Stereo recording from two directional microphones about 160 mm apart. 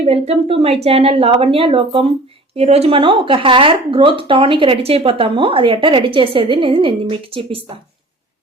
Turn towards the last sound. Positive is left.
turn(degrees=-35)  # may be behind; listen again after turning